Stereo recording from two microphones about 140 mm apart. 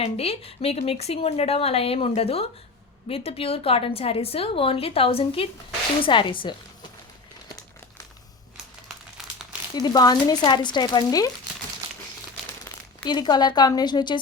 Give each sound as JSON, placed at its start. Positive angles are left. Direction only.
{"t": 0.0, "sound": "a woman's voice", "side_deg": 45}
{"t": 9.1, "sound": "crumpling", "side_deg": -5}
{"t": 9.7, "sound": "speech", "side_deg": 30}
{"t": 13.1, "sound": "speech", "side_deg": 30}